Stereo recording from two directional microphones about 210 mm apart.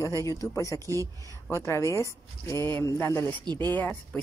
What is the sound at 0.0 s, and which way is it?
Speech, 15° left (ahead or behind).